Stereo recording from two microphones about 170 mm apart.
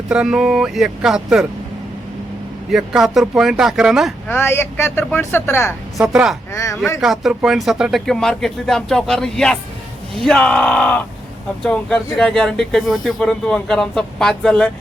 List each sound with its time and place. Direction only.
0.1 s speech: 5° right (ahead or behind)
2.6 s speech: centre (ahead or behind)
4.3 s speech: 15° left (ahead or behind)
6.0 s speech: 5° right (ahead or behind)
6.5 s speech: 15° left (ahead or behind)
7.0 s speech: centre (ahead or behind)